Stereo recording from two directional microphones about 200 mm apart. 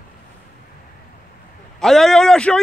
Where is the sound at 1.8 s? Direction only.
Centre (ahead or behind).